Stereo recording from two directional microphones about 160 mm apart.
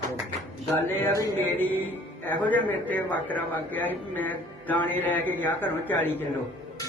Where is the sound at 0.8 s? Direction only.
15° left (ahead or behind).